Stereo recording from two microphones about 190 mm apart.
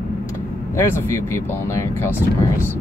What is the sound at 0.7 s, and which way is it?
Speech, 15° left (ahead or behind).